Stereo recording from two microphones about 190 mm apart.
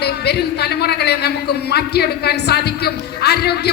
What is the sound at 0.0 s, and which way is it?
A man's voice, 60° left (ahead or behind).